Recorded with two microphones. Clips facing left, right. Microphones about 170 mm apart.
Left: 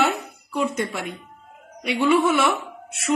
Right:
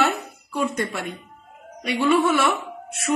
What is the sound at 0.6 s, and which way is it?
Speech, 5° left (ahead or behind).